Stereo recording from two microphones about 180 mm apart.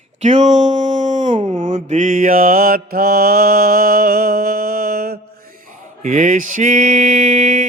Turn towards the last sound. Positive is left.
turn(degrees=-45)  # may be behind; listen again after turning